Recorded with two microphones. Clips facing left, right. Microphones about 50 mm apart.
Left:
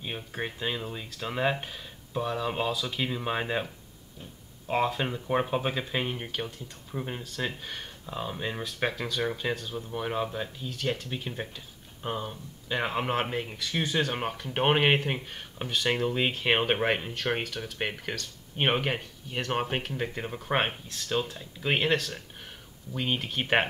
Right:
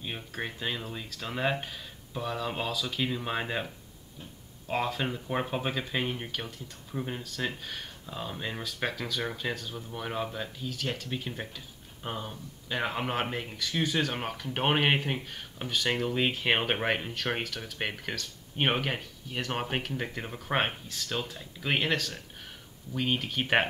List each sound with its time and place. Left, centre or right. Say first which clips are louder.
0.0 s speech: left 2 dB; centre